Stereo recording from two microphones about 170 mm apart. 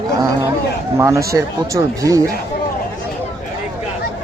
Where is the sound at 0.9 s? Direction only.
15° right (ahead or behind).